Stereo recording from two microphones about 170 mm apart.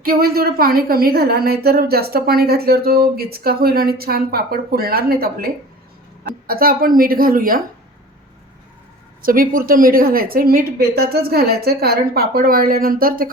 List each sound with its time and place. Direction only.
0.0 s a woman's voice: 60° right (ahead or behind)
6.5 s a woman's voice: 60° right (ahead or behind)
9.2 s a woman's voice: 55° right (ahead or behind)